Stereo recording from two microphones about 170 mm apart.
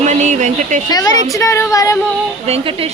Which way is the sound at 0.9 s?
25° left (ahead or behind).